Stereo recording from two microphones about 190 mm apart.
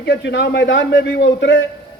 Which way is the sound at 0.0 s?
60° left (ahead or behind).